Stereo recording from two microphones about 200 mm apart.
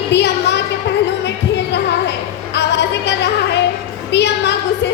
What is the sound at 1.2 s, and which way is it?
Music, 60° left (ahead or behind).